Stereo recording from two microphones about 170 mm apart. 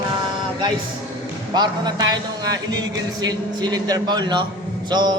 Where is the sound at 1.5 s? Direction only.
25° right (ahead or behind).